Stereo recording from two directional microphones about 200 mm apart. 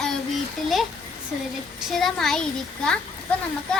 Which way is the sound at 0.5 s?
Centre (ahead or behind).